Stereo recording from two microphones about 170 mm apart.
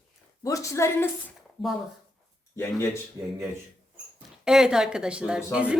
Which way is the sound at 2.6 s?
15° left (ahead or behind).